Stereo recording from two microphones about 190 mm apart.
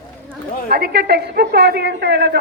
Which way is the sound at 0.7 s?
55° right (ahead or behind).